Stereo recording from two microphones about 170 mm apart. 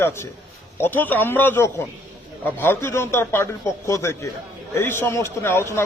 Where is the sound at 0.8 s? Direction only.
10° left (ahead or behind).